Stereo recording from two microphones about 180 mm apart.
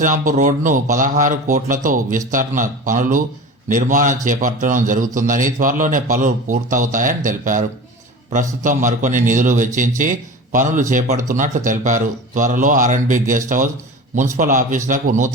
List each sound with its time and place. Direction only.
0.0 s a man's voice: 45° right (ahead or behind)